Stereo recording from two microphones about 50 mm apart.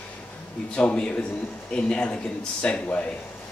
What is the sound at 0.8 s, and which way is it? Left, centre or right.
Speech, left.